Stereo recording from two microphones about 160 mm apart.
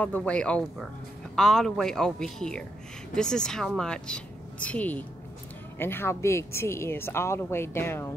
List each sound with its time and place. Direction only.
0.0 s speech: 10° left (ahead or behind)